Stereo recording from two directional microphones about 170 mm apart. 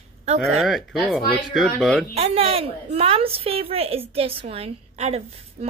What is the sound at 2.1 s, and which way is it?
A woman's voice, 35° right (ahead or behind).